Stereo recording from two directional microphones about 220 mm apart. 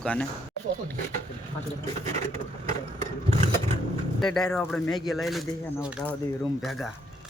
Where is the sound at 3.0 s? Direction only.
30° right (ahead or behind).